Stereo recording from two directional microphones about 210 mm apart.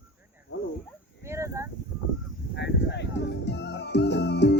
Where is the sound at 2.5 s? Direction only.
55° left (ahead or behind).